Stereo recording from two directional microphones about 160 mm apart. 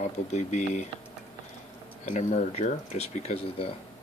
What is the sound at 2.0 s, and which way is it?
Speech, 50° left (ahead or behind).